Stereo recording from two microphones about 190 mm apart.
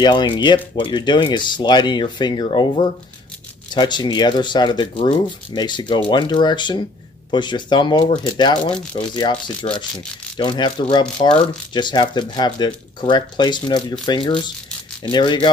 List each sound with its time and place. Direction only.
0.0 s speech: 25° left (ahead or behind)